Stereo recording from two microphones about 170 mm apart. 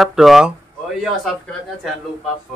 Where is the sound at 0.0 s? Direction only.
Centre (ahead or behind).